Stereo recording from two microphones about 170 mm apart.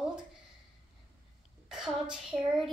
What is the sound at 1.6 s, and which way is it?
Speech, 5° right (ahead or behind).